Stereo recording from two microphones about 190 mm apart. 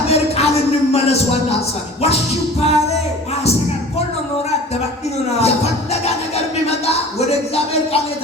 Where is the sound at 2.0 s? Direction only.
30° left (ahead or behind).